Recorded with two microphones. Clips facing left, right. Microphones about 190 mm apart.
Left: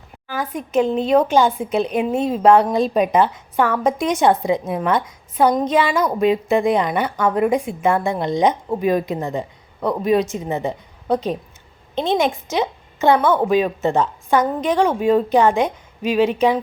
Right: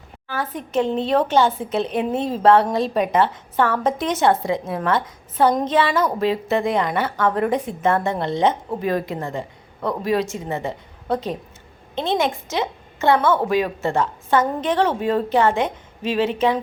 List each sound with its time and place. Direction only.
0.3 s a woman's voice: 15° left (ahead or behind)